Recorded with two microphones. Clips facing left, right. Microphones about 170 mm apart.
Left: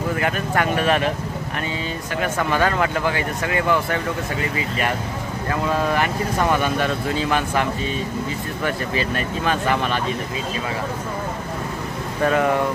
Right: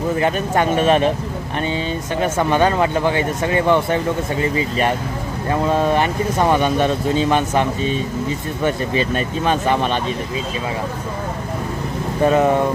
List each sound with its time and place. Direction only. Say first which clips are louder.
0.1 s speech: right 5 dB; 25° right (ahead or behind)
2.1 s speech: right 4 dB; 25° right (ahead or behind)
8.6 s speech: right 5 dB; 20° right (ahead or behind)
12.2 s speech: right 4 dB; 20° right (ahead or behind)